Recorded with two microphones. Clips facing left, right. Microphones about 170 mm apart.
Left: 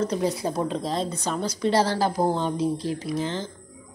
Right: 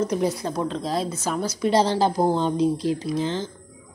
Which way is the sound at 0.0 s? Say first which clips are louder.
Right 2 dB; 10° right (ahead or behind).